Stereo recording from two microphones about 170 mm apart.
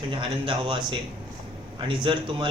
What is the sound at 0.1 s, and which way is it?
Speech, 30° right (ahead or behind).